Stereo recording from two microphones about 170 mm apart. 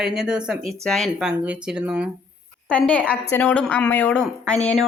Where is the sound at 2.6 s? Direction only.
5° left (ahead or behind).